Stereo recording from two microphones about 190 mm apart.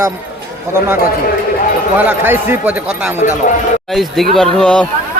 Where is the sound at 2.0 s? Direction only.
10° right (ahead or behind).